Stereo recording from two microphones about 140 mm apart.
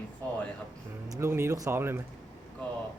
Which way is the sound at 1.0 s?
20° right (ahead or behind).